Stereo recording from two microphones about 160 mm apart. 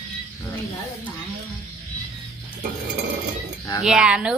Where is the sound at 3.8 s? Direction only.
5° right (ahead or behind).